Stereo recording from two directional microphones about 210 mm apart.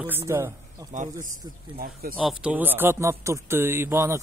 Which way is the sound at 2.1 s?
5° right (ahead or behind).